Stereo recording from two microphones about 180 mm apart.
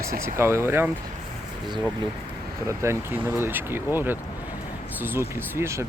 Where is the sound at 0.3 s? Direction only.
15° right (ahead or behind).